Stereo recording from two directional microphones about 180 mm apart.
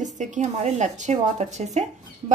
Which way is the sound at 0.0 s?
45° right (ahead or behind).